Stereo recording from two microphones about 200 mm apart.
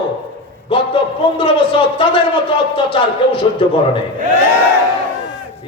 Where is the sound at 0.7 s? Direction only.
25° left (ahead or behind).